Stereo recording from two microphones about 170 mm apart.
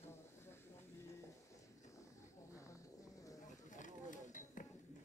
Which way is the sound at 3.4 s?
45° left (ahead or behind).